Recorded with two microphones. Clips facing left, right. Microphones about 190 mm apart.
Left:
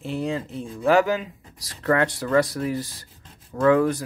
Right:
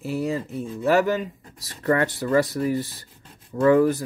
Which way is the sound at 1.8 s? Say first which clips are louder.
Even; 75° left (ahead or behind).